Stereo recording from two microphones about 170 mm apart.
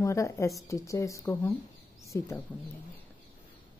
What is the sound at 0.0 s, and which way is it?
A woman's voice, 15° left (ahead or behind).